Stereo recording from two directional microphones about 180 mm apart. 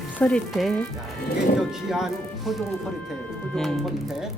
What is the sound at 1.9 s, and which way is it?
Speech, centre (ahead or behind).